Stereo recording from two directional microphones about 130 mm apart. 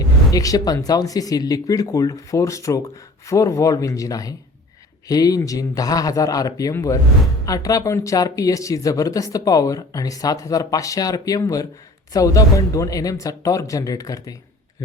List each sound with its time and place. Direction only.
0.3 s speech: 25° left (ahead or behind)